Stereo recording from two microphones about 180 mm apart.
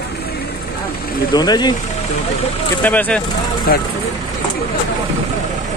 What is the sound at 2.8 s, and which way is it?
Speech, 10° left (ahead or behind).